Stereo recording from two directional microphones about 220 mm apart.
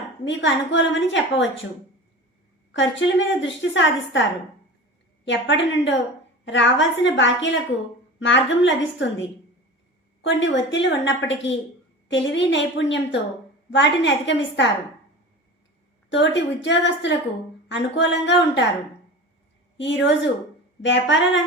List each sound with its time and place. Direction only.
0.3 s a woman's voice: 55° left (ahead or behind)
2.7 s a woman's voice: 55° left (ahead or behind)
10.2 s a woman's voice: 55° left (ahead or behind)
16.0 s a woman's voice: 55° left (ahead or behind)
19.7 s a woman's voice: 55° left (ahead or behind)